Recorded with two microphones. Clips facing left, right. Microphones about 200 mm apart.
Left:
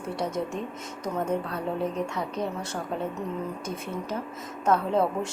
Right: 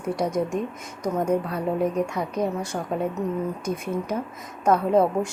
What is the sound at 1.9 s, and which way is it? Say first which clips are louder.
Speech: right 5 dB; 15° right (ahead or behind).